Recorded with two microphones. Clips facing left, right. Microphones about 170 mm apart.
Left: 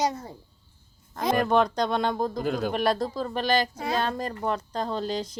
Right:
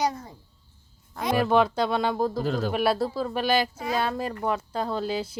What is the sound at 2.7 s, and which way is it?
Speech, 5° right (ahead or behind).